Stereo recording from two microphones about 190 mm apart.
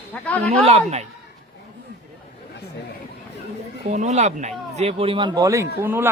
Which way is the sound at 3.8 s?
35° right (ahead or behind).